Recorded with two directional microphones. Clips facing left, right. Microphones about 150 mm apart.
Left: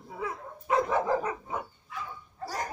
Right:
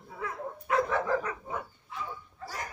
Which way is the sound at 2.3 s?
35° left (ahead or behind).